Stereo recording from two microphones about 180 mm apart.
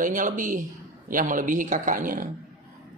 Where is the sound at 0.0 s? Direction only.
45° right (ahead or behind).